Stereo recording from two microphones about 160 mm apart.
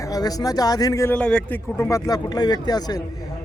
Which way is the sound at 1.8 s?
20° left (ahead or behind).